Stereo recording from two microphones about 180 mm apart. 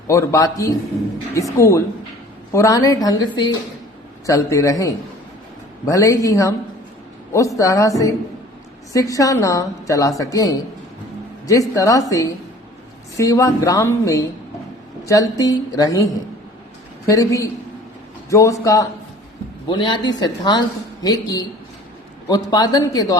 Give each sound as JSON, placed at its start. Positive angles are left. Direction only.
{"t": 0.1, "sound": "a man's voice", "side_deg": 15}
{"t": 17.1, "sound": "a man's voice", "side_deg": 15}